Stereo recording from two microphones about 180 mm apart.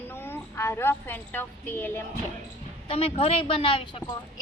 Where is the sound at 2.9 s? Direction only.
30° left (ahead or behind).